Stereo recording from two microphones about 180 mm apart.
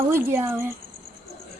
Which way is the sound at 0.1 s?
15° right (ahead or behind).